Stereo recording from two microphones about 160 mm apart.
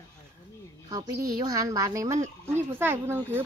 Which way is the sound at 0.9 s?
20° right (ahead or behind).